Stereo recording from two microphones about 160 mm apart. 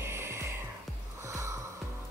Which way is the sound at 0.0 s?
15° right (ahead or behind).